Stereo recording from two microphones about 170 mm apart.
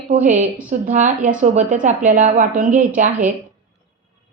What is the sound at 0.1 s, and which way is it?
A woman's voice, 45° right (ahead or behind).